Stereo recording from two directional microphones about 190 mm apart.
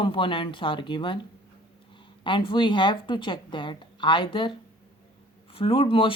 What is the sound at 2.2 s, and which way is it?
Speech, 25° left (ahead or behind).